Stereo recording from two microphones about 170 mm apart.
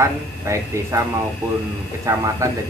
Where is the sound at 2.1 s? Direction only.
20° right (ahead or behind).